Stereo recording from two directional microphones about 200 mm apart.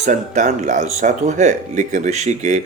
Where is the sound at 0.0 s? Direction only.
35° right (ahead or behind).